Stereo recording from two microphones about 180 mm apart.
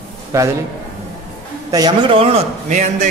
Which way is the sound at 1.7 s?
20° right (ahead or behind).